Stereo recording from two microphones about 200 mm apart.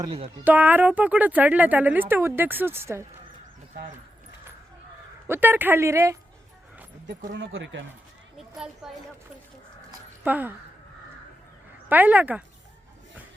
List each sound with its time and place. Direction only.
0.0 s speech: 25° right (ahead or behind)
0.4 s speech: 10° right (ahead or behind)
5.3 s speech: 10° right (ahead or behind)
7.3 s speech: 70° right (ahead or behind)
8.4 s a woman's voice: 5° right (ahead or behind)
10.2 s speech: 10° right (ahead or behind)
11.9 s speech: 10° right (ahead or behind)